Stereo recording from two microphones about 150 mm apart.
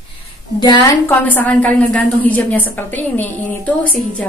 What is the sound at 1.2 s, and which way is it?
A woman's voice, 10° left (ahead or behind).